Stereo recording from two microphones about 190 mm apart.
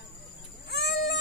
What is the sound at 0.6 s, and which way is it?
Goat, 65° left (ahead or behind).